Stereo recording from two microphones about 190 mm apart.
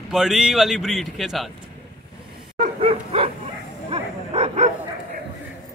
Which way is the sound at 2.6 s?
30° right (ahead or behind).